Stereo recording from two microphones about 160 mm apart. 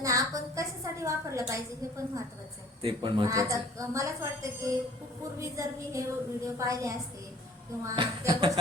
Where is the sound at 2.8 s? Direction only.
30° right (ahead or behind).